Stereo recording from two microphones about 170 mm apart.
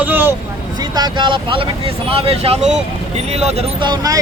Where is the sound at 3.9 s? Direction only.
20° right (ahead or behind).